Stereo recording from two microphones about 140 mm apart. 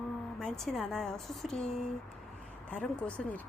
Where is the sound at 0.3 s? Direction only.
5° left (ahead or behind).